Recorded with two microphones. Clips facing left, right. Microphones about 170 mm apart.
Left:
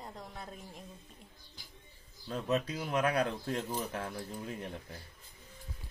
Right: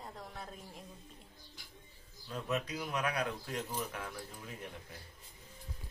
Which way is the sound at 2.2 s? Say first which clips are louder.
Left 4 dB; 30° left (ahead or behind).